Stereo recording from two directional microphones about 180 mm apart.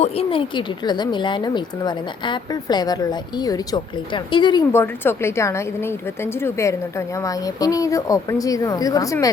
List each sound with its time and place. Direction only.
0.0 s a woman's voice: 30° left (ahead or behind)
4.7 s a woman's voice: 15° left (ahead or behind)